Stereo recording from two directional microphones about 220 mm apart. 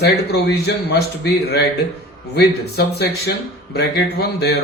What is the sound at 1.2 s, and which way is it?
Speech, 45° left (ahead or behind).